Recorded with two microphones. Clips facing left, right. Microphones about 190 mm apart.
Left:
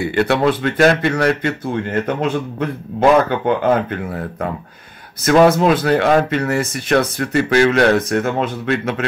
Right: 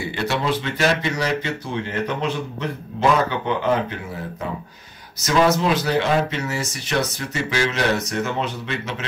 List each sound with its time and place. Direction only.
0.0 s speech: 60° left (ahead or behind)